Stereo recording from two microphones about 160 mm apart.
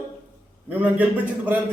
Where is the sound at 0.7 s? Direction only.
10° right (ahead or behind).